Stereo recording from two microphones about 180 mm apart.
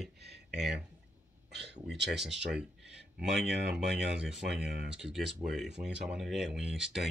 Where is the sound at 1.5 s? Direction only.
75° right (ahead or behind).